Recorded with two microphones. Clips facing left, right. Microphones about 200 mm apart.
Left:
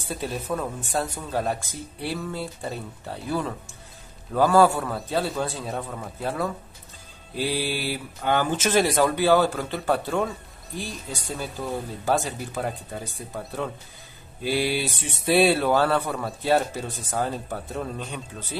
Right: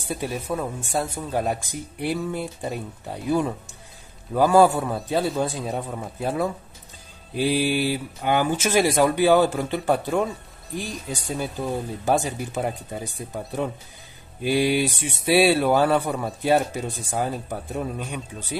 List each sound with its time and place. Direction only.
0.0 s speech: 15° right (ahead or behind)